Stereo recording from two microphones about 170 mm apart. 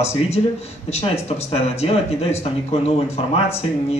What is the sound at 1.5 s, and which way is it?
Speech, 35° left (ahead or behind).